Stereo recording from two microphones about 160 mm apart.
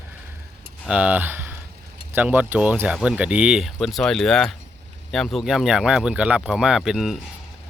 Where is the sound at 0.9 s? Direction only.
10° right (ahead or behind).